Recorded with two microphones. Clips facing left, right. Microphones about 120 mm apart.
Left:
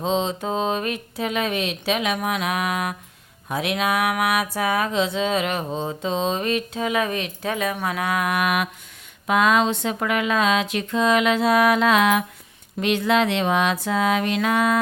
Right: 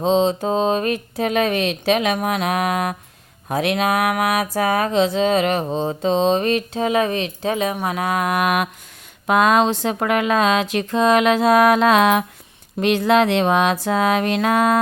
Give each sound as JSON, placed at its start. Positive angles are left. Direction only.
{"t": 0.0, "sound": "speech", "side_deg": -35}
{"t": 5.7, "sound": "speech", "side_deg": -30}